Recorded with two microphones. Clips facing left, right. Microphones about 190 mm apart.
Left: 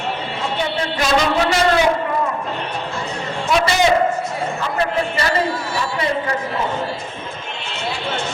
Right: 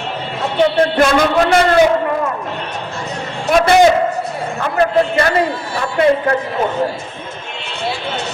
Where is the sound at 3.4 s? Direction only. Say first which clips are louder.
Right 6 dB; 50° right (ahead or behind).